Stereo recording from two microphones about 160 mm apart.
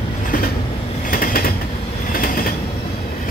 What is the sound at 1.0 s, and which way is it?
Train, 60° left (ahead or behind).